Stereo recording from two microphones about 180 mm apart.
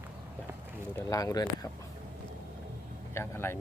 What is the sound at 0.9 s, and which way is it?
Speech, 20° left (ahead or behind).